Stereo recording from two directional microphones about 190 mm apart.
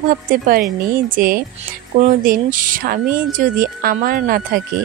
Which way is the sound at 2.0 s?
45° right (ahead or behind).